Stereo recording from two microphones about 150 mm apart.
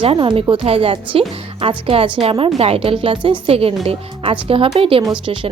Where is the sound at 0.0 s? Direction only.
35° right (ahead or behind).